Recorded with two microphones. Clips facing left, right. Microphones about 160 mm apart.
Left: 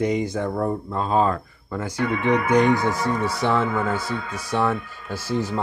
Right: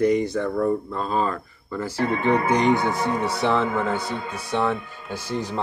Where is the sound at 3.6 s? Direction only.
25° right (ahead or behind).